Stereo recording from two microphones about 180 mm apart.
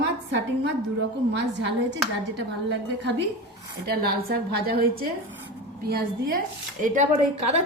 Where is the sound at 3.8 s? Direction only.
60° right (ahead or behind).